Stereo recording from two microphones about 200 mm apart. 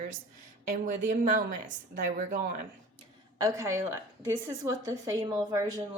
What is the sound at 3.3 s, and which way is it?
A woman's voice, 15° right (ahead or behind).